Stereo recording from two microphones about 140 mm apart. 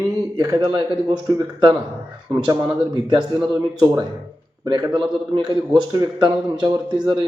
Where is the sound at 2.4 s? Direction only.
30° right (ahead or behind).